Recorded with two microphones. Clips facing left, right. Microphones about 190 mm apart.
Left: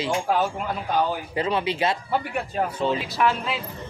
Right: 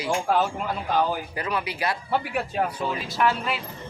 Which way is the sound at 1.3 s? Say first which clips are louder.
Left 5 dB; 25° left (ahead or behind).